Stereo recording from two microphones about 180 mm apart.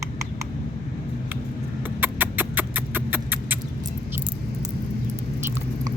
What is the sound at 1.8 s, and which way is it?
Rodents, 10° right (ahead or behind).